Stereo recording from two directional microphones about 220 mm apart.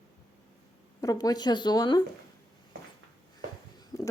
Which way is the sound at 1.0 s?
15° left (ahead or behind).